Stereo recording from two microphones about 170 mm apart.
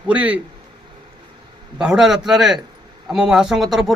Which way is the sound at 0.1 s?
10° right (ahead or behind).